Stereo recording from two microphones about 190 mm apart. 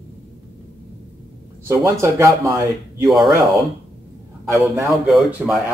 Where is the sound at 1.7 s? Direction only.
15° right (ahead or behind).